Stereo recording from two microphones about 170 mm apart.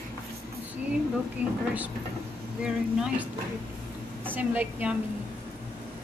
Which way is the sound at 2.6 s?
5° right (ahead or behind).